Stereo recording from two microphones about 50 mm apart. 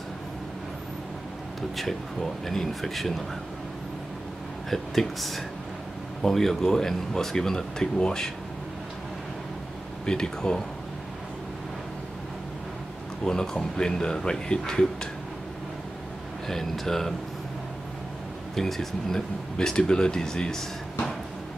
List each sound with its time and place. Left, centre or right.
1.8 s speech: centre
4.6 s speech: centre
10.0 s speech: centre
13.2 s speech: centre
16.4 s speech: centre
18.5 s speech: centre
19.5 s speech: centre